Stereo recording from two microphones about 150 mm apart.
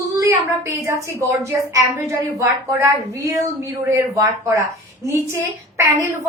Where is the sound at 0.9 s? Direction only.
20° right (ahead or behind).